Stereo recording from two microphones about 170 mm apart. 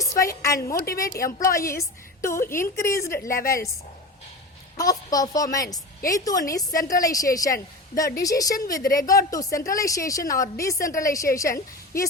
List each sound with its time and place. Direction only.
0.3 s a woman's voice: 15° left (ahead or behind)
3.2 s a woman's voice: 55° left (ahead or behind)
4.8 s a woman's voice: 20° left (ahead or behind)